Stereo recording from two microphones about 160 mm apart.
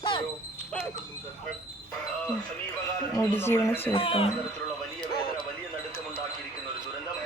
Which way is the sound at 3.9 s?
35° left (ahead or behind).